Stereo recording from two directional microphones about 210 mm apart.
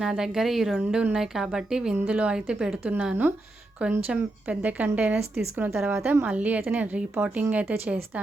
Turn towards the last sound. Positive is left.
turn(degrees=-10)  # may be behind; listen again after turning